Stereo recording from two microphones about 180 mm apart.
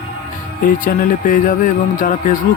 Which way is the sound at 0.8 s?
45° left (ahead or behind).